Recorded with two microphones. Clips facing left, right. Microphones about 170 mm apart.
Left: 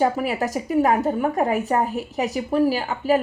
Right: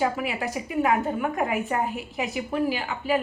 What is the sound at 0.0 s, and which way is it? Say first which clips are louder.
A woman's voice: left 5 dB; 40° left (ahead or behind).